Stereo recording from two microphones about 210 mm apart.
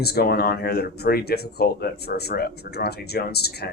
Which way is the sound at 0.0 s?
50° left (ahead or behind).